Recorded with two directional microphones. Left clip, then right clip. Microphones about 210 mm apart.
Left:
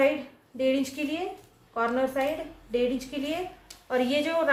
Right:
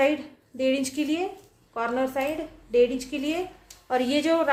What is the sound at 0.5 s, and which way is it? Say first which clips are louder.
A woman's voice: right 1 dB; 45° right (ahead or behind).